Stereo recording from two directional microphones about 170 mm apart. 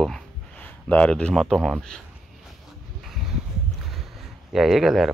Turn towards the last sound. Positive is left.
turn(degrees=0)  # may be behind; listen again after turning